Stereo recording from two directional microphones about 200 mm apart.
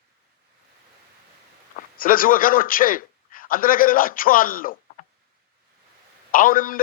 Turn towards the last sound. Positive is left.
turn(degrees=45)  # may be behind; listen again after turning